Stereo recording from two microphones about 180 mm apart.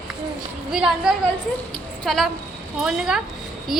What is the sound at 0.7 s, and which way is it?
A woman's voice, 5° right (ahead or behind).